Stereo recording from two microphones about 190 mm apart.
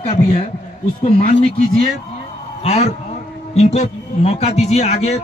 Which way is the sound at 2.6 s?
35° left (ahead or behind).